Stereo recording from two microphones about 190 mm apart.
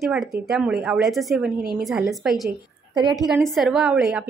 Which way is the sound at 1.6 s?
50° right (ahead or behind).